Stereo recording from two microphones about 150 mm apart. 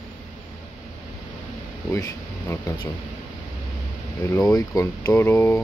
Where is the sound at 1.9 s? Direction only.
20° left (ahead or behind).